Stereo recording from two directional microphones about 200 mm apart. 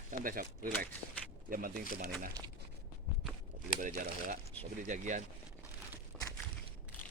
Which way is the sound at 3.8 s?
40° right (ahead or behind).